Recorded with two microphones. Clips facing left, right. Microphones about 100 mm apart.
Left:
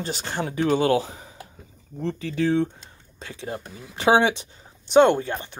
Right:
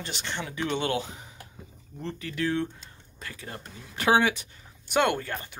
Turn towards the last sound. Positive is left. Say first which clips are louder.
# left 7 dB
turn(degrees=25)  # may be behind; listen again after turning